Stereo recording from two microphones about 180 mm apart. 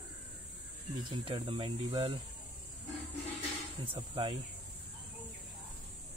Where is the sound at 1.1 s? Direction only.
30° right (ahead or behind).